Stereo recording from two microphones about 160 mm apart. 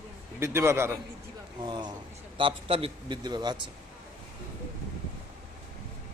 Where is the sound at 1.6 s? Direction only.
30° right (ahead or behind).